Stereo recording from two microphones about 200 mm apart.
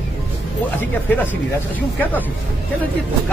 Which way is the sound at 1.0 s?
10° left (ahead or behind).